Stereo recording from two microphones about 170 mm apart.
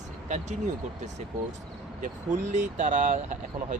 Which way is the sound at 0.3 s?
45° right (ahead or behind).